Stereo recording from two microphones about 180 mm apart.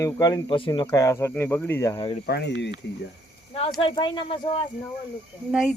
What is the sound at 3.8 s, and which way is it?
Speech, 30° left (ahead or behind).